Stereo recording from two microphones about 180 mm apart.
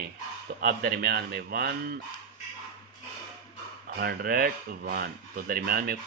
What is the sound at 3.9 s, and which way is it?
Speech, 60° right (ahead or behind).